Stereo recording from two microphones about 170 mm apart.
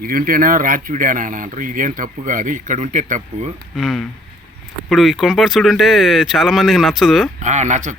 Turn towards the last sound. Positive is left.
turn(degrees=-45)  # may be behind; listen again after turning